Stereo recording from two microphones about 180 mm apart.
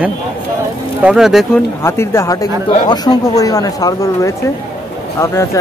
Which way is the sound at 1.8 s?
15° left (ahead or behind).